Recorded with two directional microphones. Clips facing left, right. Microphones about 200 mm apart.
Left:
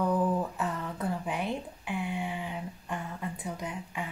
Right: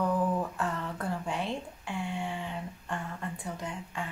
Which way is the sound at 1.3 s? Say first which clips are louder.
Left 1 dB; 15° left (ahead or behind).